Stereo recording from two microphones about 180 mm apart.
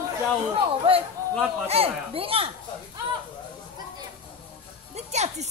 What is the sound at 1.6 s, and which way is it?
Speech, 35° right (ahead or behind).